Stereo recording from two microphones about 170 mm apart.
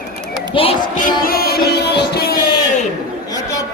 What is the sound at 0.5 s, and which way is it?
Speech, 30° left (ahead or behind).